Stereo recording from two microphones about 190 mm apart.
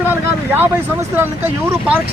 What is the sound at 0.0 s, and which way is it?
Vehicle, 10° right (ahead or behind).